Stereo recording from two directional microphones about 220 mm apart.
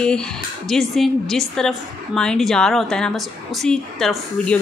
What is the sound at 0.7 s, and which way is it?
A woman's voice, centre (ahead or behind).